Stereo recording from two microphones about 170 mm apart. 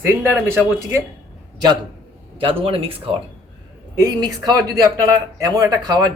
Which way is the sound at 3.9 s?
20° right (ahead or behind).